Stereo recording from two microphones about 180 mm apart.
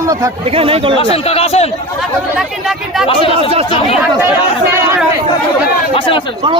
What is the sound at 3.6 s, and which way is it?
Speech, 30° left (ahead or behind).